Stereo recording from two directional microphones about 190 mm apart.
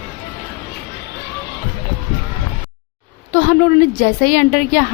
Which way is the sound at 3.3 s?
45° left (ahead or behind).